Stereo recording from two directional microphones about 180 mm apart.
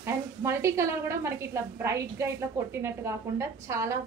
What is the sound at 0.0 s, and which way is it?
A woman's voice, 15° right (ahead or behind).